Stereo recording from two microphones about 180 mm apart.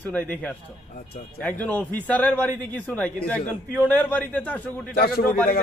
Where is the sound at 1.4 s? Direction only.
5° left (ahead or behind).